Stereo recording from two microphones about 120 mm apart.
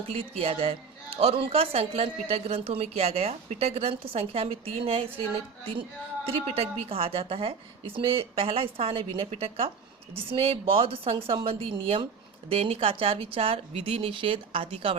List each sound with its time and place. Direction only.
0.1 s a woman's voice: 55° right (ahead or behind)